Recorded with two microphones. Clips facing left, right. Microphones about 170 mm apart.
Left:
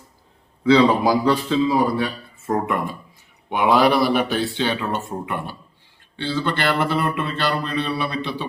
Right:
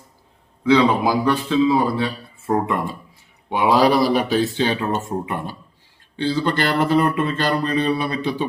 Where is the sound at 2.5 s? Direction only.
30° right (ahead or behind).